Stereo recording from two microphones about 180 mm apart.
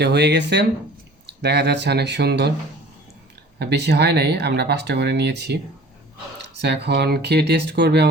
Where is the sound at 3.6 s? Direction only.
70° right (ahead or behind).